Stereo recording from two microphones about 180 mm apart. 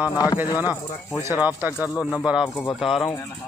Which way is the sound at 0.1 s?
20° left (ahead or behind).